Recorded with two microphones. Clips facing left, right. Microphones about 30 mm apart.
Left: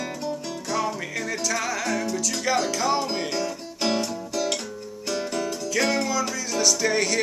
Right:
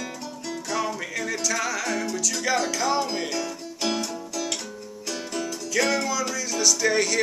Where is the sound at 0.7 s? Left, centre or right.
Centre.